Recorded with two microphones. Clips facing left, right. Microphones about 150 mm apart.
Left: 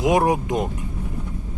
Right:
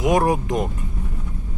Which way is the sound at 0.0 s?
20° left (ahead or behind).